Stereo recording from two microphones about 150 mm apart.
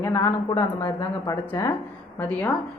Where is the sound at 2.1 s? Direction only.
5° left (ahead or behind).